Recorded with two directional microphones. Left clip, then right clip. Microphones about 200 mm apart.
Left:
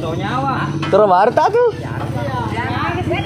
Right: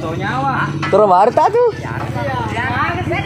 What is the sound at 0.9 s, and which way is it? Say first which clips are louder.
Speech: right 1 dB; 15° right (ahead or behind).